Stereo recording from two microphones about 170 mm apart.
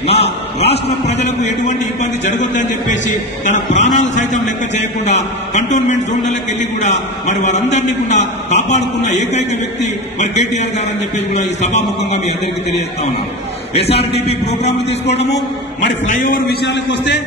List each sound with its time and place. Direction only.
0.0 s a sound: 35° left (ahead or behind)
0.7 s a man's voice: 40° left (ahead or behind)
3.4 s a man's voice: 45° left (ahead or behind)
13.7 s a man's voice: 35° left (ahead or behind)
16.1 s a man's voice: 50° left (ahead or behind)
16.6 s a man's voice: 90° left